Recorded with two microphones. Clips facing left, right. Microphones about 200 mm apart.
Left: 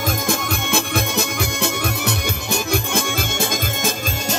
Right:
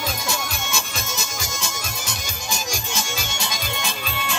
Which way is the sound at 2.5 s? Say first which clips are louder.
Left 8 dB; 60° left (ahead or behind).